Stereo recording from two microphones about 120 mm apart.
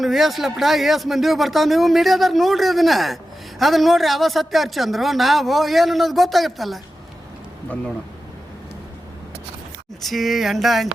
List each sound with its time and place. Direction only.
0.0 s speech: centre (ahead or behind)
10.0 s speech: centre (ahead or behind)